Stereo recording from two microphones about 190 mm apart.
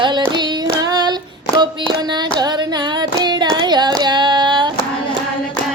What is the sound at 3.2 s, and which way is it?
Child singing, 20° right (ahead or behind).